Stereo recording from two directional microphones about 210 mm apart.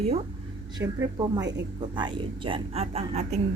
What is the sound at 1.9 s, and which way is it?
A woman's voice, 20° right (ahead or behind).